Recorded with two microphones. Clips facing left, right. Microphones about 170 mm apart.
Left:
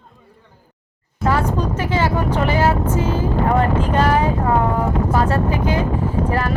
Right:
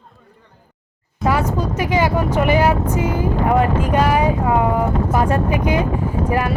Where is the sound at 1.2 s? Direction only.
10° right (ahead or behind).